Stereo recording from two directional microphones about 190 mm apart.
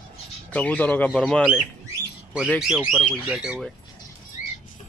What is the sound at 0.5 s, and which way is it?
Speech, 10° left (ahead or behind).